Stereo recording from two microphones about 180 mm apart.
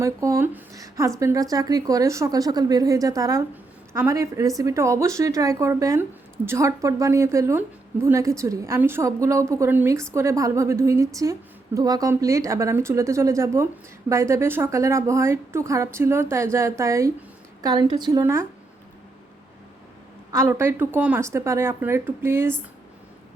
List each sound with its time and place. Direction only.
0.0 s a woman's voice: 15° right (ahead or behind)
20.3 s a woman's voice: 15° right (ahead or behind)